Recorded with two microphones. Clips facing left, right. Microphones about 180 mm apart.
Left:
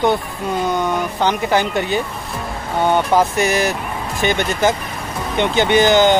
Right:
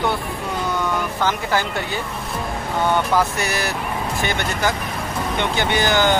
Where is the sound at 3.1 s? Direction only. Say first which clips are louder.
Left 5 dB; 20° left (ahead or behind).